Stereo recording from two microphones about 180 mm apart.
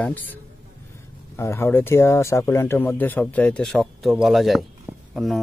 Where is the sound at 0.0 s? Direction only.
10° left (ahead or behind).